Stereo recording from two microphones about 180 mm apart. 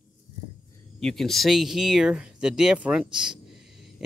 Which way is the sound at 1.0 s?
Centre (ahead or behind).